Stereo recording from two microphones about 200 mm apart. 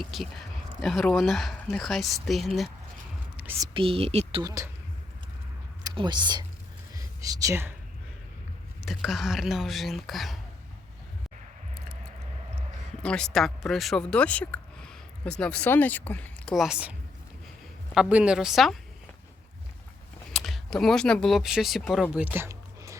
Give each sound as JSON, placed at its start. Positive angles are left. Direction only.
{"t": 0.0, "sound": "speech", "side_deg": 0}
{"t": 3.3, "sound": "whispering", "side_deg": -10}
{"t": 3.8, "sound": "speech", "side_deg": -30}
{"t": 5.8, "sound": "speech", "side_deg": -25}
{"t": 6.9, "sound": "whispering", "side_deg": -15}
{"t": 8.8, "sound": "speech", "side_deg": 0}
{"t": 13.0, "sound": "speech", "side_deg": 5}
{"t": 17.9, "sound": "speech", "side_deg": -5}
{"t": 20.3, "sound": "speech", "side_deg": 0}